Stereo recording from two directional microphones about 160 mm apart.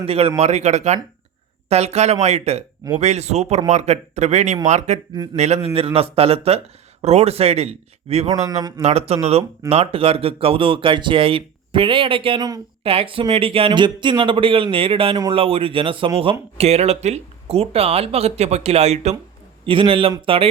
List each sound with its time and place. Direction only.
0.0 s speech: 35° right (ahead or behind)
5.1 s speech: 25° right (ahead or behind)
5.6 s speech: 40° right (ahead or behind)
8.3 s speech: 25° right (ahead or behind)
8.8 s speech: 40° right (ahead or behind)